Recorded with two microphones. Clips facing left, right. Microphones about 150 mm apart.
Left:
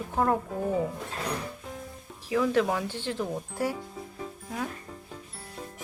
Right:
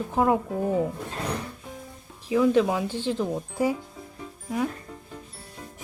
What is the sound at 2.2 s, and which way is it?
Speech, 15° right (ahead or behind).